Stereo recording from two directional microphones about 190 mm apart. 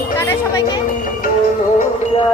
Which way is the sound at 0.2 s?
15° left (ahead or behind).